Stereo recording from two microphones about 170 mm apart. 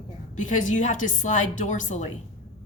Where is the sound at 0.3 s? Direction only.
50° left (ahead or behind).